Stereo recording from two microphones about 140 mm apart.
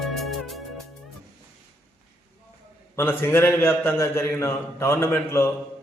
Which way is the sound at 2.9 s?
15° left (ahead or behind).